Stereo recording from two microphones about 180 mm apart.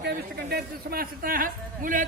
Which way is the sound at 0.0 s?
60° right (ahead or behind).